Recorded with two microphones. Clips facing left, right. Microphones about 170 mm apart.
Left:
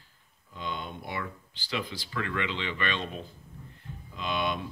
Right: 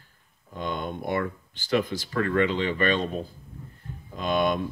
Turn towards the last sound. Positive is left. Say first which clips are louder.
# right 7 dB
turn(degrees=-45)  # may be behind; listen again after turning